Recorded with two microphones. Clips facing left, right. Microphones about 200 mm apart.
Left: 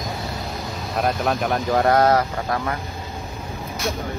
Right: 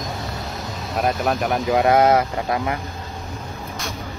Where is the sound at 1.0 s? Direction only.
5° right (ahead or behind).